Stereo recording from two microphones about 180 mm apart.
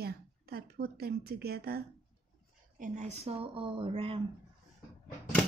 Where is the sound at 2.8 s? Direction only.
40° right (ahead or behind).